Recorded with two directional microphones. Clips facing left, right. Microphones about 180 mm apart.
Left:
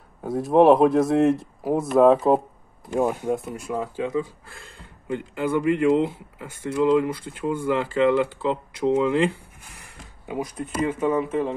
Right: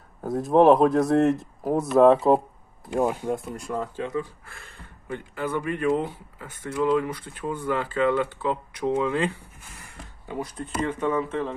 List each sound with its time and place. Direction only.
0.2 s speech: centre (ahead or behind)
6.7 s speech: 25° left (ahead or behind)
7.4 s speech: 10° left (ahead or behind)
8.4 s speech: 25° left (ahead or behind)